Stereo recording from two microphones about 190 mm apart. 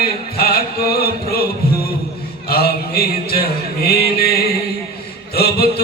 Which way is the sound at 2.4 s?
55° left (ahead or behind).